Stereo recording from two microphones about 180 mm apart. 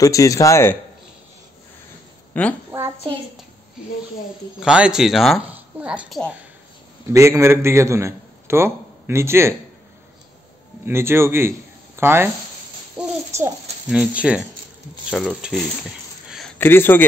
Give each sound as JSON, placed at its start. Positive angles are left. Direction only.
{"t": 0.0, "sound": "a man's voice", "side_deg": 15}
{"t": 2.3, "sound": "a woman's voice", "side_deg": 10}
{"t": 4.6, "sound": "a woman's voice", "side_deg": -5}
{"t": 7.1, "sound": "a man's voice", "side_deg": -15}
{"t": 10.9, "sound": "a woman's voice", "side_deg": -15}
{"t": 16.3, "sound": "a sound", "side_deg": 0}
{"t": 16.5, "sound": "a man's voice", "side_deg": 10}